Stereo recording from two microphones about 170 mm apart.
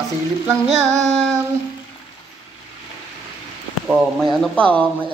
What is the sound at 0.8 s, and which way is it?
Female singing, 15° right (ahead or behind).